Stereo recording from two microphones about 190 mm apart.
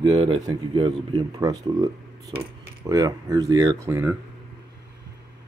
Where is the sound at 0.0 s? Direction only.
30° right (ahead or behind).